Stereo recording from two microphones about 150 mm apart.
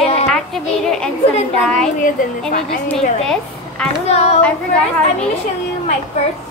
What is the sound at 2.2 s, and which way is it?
Speech, 60° left (ahead or behind).